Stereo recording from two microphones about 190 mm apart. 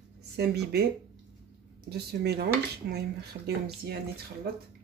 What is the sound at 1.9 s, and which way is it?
Speech, 60° right (ahead or behind).